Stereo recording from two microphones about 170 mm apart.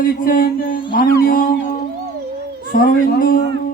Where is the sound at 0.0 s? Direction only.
55° left (ahead or behind).